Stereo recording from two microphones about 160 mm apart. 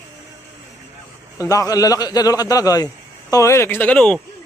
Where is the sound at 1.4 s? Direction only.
20° left (ahead or behind).